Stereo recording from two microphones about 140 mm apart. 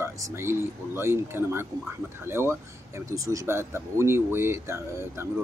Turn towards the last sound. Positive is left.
turn(degrees=-20)  # may be behind; listen again after turning